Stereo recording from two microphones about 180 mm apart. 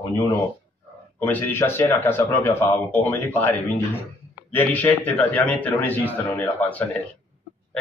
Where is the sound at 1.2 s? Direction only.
10° left (ahead or behind).